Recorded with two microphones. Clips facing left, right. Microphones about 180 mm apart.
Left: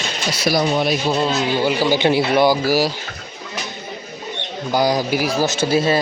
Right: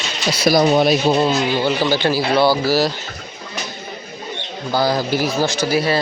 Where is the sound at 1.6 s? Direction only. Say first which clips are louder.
Left 1 dB; 10° left (ahead or behind).